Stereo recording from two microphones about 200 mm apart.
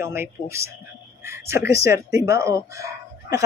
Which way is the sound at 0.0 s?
10° right (ahead or behind).